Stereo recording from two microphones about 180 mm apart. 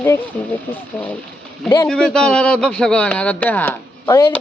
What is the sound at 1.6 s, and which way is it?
A man's voice, 15° left (ahead or behind).